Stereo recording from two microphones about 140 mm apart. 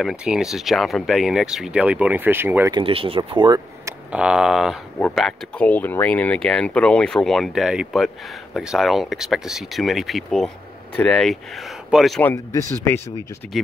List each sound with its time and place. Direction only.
0.0 s speech: 5° right (ahead or behind)
2.7 s speech: 40° right (ahead or behind)
4.1 s speech: 5° right (ahead or behind)
12.5 s speech: 20° left (ahead or behind)